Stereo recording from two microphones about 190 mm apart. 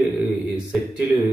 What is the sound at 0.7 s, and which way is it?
Speech, 5° right (ahead or behind).